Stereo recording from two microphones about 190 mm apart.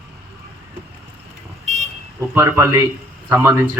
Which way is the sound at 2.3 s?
15° right (ahead or behind).